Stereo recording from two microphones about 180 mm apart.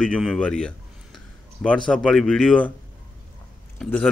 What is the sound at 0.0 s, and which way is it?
A man's voice, 5° left (ahead or behind).